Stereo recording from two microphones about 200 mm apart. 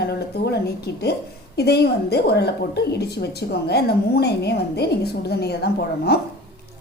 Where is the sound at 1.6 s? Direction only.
55° left (ahead or behind).